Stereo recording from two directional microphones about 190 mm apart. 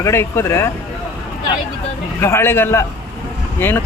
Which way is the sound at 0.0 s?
15° left (ahead or behind).